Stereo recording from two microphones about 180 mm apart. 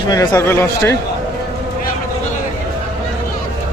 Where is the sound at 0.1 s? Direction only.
20° left (ahead or behind).